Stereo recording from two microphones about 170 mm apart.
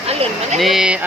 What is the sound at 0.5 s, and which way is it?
Speech, centre (ahead or behind).